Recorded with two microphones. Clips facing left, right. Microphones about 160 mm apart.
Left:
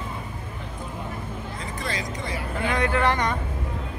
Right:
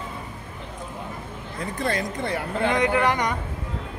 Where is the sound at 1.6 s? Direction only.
55° right (ahead or behind).